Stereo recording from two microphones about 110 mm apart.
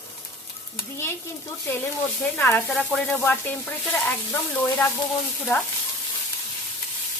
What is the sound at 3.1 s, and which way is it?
Stir, 20° left (ahead or behind).